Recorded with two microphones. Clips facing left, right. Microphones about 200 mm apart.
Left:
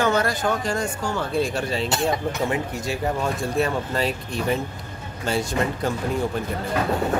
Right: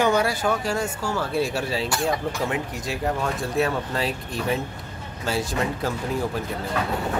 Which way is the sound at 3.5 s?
Centre (ahead or behind).